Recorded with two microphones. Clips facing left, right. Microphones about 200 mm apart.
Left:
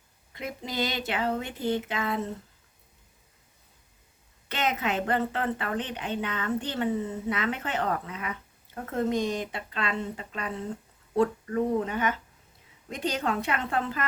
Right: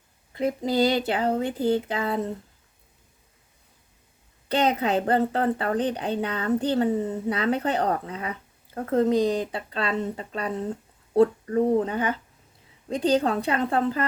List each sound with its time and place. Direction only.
0.3 s a woman's voice: 35° right (ahead or behind)
4.4 s a woman's voice: 35° right (ahead or behind)